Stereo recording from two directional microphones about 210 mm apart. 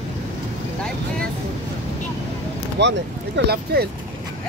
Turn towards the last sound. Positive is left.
turn(degrees=-50)  # may be behind; listen again after turning